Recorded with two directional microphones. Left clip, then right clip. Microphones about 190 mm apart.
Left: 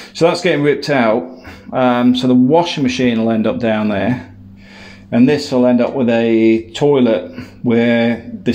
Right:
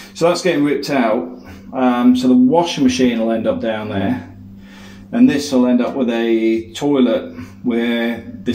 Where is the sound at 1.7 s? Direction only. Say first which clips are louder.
Left 2 dB; 55° left (ahead or behind).